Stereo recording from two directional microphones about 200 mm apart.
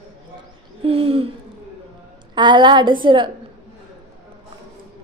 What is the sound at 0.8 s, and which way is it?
Speech, 30° right (ahead or behind).